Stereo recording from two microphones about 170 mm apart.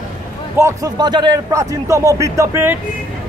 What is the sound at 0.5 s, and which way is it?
A man's voice, 20° right (ahead or behind).